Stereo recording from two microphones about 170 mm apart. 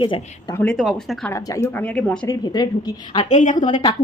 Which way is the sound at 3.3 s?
45° left (ahead or behind).